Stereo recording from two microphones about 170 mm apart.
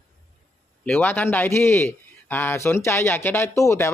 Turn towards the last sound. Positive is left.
turn(degrees=15)  # may be behind; listen again after turning